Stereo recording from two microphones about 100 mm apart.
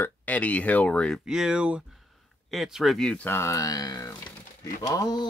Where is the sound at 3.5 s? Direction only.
40° left (ahead or behind).